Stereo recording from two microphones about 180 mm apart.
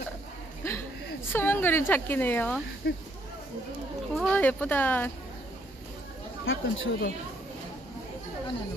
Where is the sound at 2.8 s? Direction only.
65° left (ahead or behind).